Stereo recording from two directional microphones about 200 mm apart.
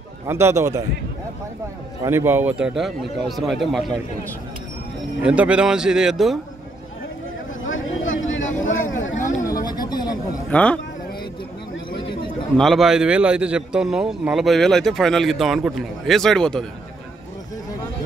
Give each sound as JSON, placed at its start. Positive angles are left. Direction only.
{"t": 0.3, "sound": "a man's voice", "side_deg": -10}
{"t": 2.0, "sound": "a man's voice", "side_deg": -10}
{"t": 5.2, "sound": "a man's voice", "side_deg": -5}
{"t": 7.6, "sound": "a sound", "side_deg": 75}
{"t": 9.4, "sound": "a sound", "side_deg": 15}
{"t": 10.5, "sound": "a man's voice", "side_deg": 5}
{"t": 12.5, "sound": "a man's voice", "side_deg": 0}